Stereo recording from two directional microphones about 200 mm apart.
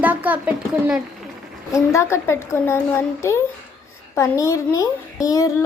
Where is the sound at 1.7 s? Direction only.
15° left (ahead or behind).